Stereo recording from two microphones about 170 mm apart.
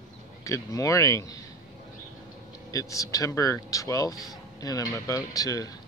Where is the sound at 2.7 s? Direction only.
20° left (ahead or behind).